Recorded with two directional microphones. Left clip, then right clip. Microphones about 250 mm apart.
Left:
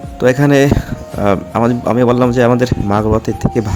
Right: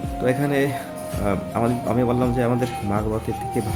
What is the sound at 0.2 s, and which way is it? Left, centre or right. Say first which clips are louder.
Speech: left 11 dB; left.